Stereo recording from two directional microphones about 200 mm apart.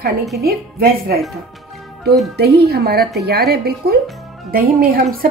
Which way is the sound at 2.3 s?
55° right (ahead or behind).